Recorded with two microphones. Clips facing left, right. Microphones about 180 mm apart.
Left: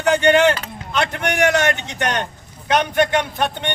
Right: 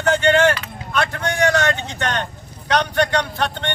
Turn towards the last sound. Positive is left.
turn(degrees=15)  # may be behind; listen again after turning